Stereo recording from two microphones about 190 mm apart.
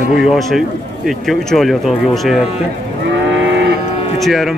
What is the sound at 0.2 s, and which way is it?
Speech, centre (ahead or behind).